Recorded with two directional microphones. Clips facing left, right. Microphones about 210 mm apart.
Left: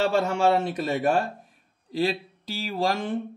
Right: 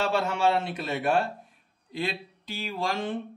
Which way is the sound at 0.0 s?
45° left (ahead or behind).